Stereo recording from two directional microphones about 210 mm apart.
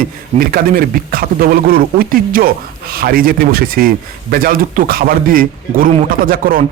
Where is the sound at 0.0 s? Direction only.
45° right (ahead or behind).